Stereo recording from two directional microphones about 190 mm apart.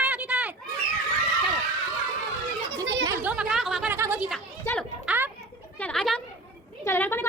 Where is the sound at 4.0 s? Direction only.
10° right (ahead or behind).